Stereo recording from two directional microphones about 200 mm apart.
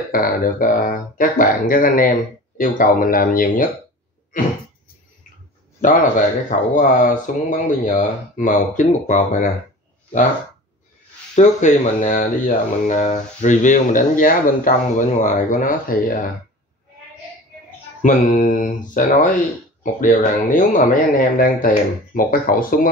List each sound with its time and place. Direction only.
0.1 s speech: 45° left (ahead or behind)
5.8 s speech: 40° left (ahead or behind)
11.3 s speech: 35° left (ahead or behind)
18.0 s speech: 40° left (ahead or behind)